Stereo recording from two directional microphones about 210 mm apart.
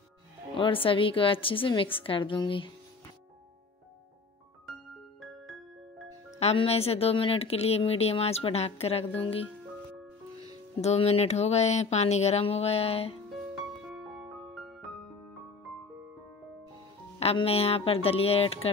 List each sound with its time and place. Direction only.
0.6 s speech: 25° left (ahead or behind)
5.2 s music: centre (ahead or behind)
6.4 s speech: 30° left (ahead or behind)
10.8 s speech: 30° left (ahead or behind)
13.8 s music: centre (ahead or behind)
17.2 s speech: 30° left (ahead or behind)